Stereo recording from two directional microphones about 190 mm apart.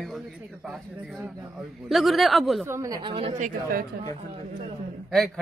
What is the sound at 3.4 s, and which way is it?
Speech, 50° right (ahead or behind).